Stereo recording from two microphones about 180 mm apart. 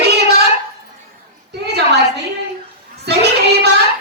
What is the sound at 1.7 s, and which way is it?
Speech, 65° right (ahead or behind).